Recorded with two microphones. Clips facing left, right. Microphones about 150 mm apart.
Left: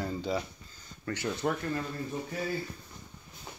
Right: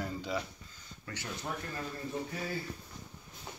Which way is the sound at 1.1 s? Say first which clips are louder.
Left 9 dB; 60° left (ahead or behind).